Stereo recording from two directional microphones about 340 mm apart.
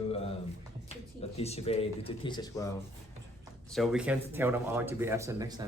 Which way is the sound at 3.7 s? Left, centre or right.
Centre.